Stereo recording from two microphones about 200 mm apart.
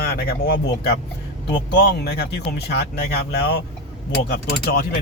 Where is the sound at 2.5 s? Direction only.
55° left (ahead or behind).